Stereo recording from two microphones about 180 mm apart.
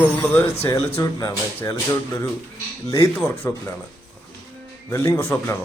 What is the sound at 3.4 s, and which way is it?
Speech, 10° left (ahead or behind).